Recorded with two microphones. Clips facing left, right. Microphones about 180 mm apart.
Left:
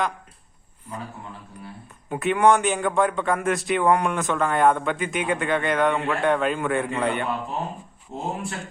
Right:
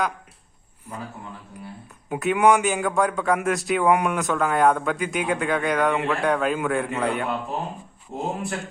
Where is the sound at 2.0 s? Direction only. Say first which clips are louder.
Even; 5° right (ahead or behind).